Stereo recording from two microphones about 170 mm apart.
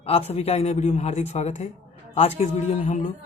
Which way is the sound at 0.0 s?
35° left (ahead or behind).